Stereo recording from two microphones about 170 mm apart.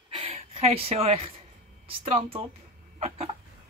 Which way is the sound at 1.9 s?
35° right (ahead or behind).